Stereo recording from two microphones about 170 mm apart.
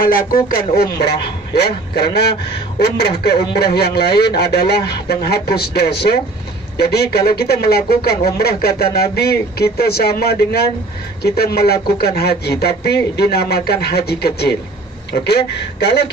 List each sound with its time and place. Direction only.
0.0 s a man's voice: 60° left (ahead or behind)